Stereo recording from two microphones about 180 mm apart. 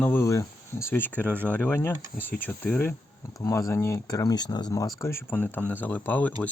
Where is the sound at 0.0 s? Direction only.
10° left (ahead or behind).